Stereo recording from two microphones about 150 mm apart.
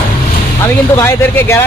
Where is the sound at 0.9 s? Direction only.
15° left (ahead or behind).